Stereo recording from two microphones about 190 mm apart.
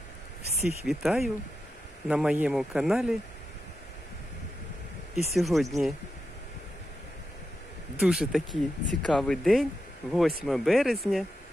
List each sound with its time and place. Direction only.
0.8 s speech: centre (ahead or behind)
5.1 s speech: centre (ahead or behind)
8.0 s speech: 5° right (ahead or behind)